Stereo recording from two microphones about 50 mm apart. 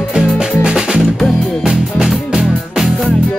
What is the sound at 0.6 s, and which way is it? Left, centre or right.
Music, centre.